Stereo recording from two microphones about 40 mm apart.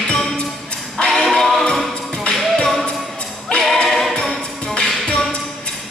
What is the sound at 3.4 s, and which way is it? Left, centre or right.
Music, centre.